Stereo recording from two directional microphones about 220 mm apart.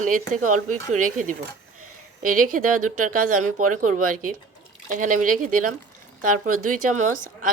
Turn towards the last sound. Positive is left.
turn(degrees=-35)  # may be behind; listen again after turning